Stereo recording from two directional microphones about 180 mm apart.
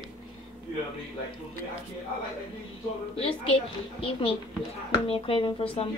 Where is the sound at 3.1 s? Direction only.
35° left (ahead or behind).